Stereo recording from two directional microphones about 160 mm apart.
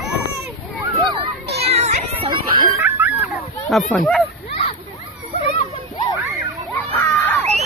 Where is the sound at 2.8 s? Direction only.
15° right (ahead or behind).